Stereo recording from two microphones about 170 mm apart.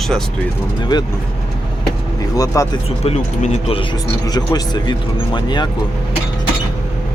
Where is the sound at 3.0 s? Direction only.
40° left (ahead or behind).